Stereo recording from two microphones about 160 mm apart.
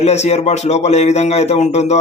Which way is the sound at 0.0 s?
45° left (ahead or behind).